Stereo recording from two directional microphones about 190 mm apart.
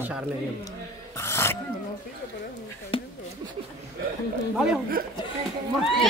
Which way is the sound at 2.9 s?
30° left (ahead or behind).